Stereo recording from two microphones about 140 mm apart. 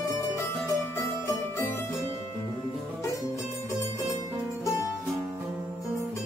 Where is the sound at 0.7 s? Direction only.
20° left (ahead or behind).